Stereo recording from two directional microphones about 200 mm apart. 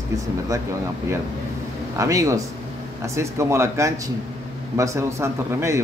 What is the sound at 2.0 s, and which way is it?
A man's voice, 15° right (ahead or behind).